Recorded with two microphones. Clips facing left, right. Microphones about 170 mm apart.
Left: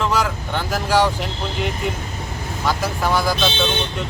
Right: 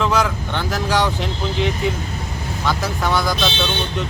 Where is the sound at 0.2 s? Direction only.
5° left (ahead or behind).